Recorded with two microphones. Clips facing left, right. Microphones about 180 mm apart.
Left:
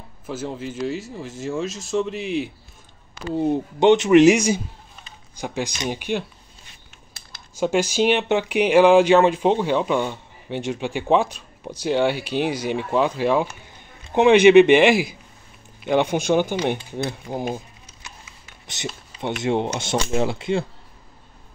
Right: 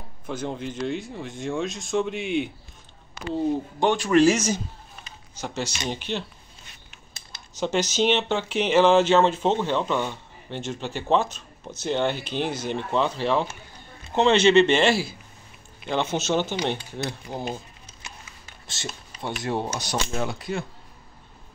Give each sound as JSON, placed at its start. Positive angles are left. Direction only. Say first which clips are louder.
{"t": 0.3, "sound": "speech", "louder": "left 1 dB", "side_deg": 5}
{"t": 3.8, "sound": "speech", "louder": "left 6 dB", "side_deg": 20}
{"t": 7.6, "sound": "speech", "louder": "left 3 dB", "side_deg": 10}
{"t": 18.7, "sound": "speech", "louder": "left 5 dB", "side_deg": 20}